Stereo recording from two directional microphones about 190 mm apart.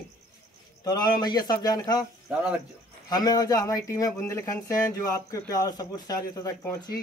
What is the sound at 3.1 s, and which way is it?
A man's voice, 20° left (ahead or behind).